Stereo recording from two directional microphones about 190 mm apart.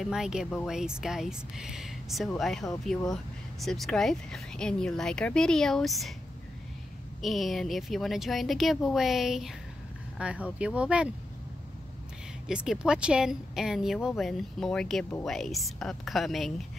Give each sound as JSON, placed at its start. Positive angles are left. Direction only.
{"t": 0.0, "sound": "speech", "side_deg": -5}
{"t": 7.2, "sound": "speech", "side_deg": 0}
{"t": 12.4, "sound": "speech", "side_deg": -5}